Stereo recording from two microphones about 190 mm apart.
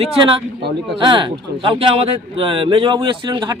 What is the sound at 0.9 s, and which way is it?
Speech, 25° right (ahead or behind).